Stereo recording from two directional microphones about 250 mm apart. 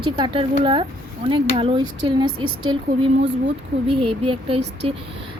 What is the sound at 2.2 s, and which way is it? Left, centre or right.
Speech, right.